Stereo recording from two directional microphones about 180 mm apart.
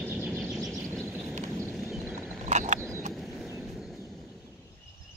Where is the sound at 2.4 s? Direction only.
40° right (ahead or behind).